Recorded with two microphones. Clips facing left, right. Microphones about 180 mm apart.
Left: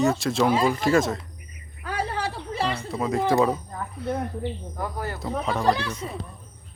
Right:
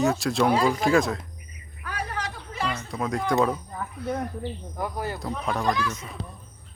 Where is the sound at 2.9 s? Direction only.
Centre (ahead or behind).